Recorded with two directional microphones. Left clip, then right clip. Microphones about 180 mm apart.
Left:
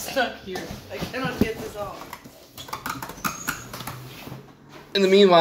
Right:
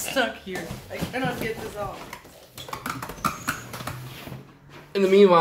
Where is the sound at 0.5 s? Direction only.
25° right (ahead or behind).